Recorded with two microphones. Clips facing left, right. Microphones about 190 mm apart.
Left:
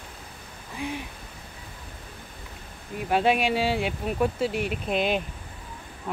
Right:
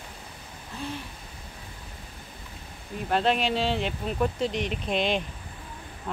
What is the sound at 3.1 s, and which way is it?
Speech, 10° left (ahead or behind).